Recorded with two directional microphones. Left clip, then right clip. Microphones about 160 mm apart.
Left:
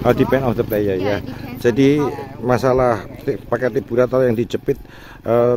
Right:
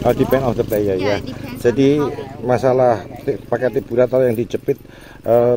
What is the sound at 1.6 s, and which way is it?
Speech, 20° left (ahead or behind).